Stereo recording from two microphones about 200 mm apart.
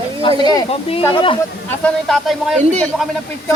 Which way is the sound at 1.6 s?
5° left (ahead or behind).